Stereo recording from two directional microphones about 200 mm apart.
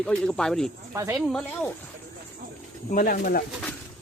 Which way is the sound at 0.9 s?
15° right (ahead or behind).